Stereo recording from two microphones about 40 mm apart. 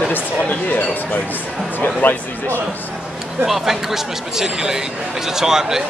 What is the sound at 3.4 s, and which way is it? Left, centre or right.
Speech, centre.